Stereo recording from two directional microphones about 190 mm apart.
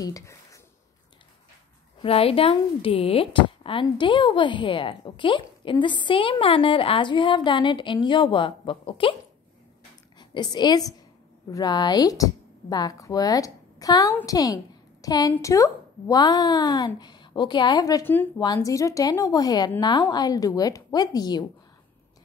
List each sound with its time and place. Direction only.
0.0 s speech: 15° left (ahead or behind)
2.0 s speech: 30° left (ahead or behind)
10.1 s a woman's voice: 20° left (ahead or behind)